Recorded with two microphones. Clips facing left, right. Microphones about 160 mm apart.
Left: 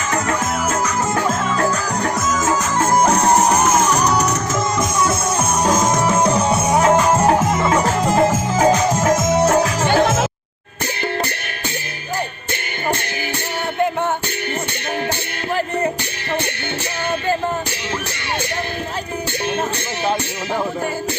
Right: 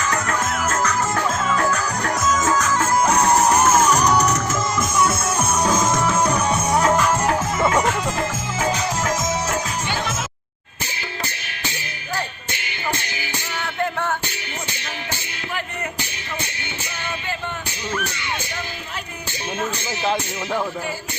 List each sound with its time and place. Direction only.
0.1 s music: 20° left (ahead or behind)
2.5 s music: 30° left (ahead or behind)
3.7 s music: 10° left (ahead or behind); by 10.2 s 50° left (ahead or behind)